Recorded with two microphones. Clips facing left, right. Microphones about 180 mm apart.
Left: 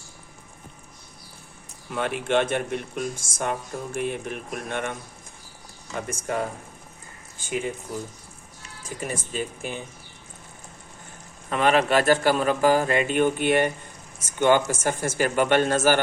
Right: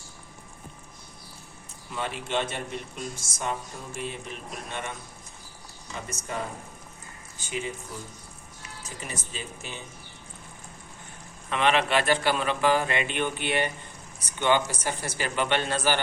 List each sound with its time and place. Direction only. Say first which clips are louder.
1.9 s a man's voice: left 7 dB; 55° left (ahead or behind)
8.8 s a man's voice: left 7 dB; 50° left (ahead or behind)
11.4 s a man's voice: left 4 dB; 40° left (ahead or behind)